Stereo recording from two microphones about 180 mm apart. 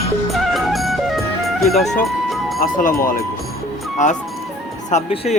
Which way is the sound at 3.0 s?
55° left (ahead or behind).